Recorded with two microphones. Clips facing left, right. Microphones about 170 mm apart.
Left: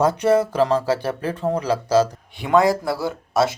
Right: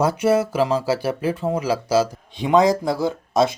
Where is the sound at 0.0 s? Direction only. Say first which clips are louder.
Left 1 dB; 10° right (ahead or behind).